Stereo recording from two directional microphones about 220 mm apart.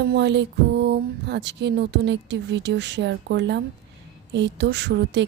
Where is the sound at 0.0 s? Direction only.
50° right (ahead or behind).